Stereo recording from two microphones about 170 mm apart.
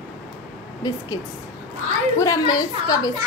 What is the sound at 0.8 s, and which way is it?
Speech, 20° left (ahead or behind).